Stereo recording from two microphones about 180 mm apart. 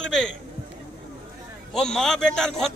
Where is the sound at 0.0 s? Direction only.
5° left (ahead or behind).